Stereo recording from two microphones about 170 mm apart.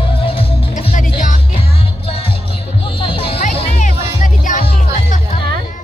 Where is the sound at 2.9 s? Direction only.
30° left (ahead or behind).